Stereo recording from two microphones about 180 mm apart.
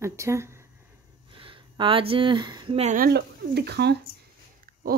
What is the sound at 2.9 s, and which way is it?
Speech, 60° right (ahead or behind).